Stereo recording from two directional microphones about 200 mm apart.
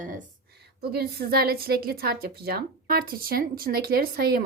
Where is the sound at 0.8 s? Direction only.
50° right (ahead or behind).